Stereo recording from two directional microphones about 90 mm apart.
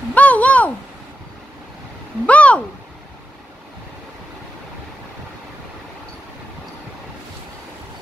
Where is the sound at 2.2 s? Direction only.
15° left (ahead or behind).